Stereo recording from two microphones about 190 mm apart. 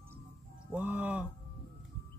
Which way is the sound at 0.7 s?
5° right (ahead or behind).